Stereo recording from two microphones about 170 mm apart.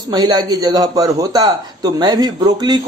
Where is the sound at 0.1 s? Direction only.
25° right (ahead or behind).